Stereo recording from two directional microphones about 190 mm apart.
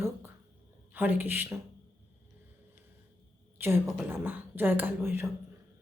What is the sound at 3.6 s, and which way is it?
A woman's voice, 10° right (ahead or behind).